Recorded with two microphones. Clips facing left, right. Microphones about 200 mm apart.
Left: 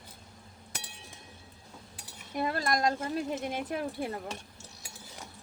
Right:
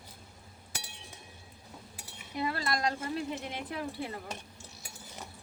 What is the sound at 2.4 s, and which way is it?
Speech, 50° left (ahead or behind).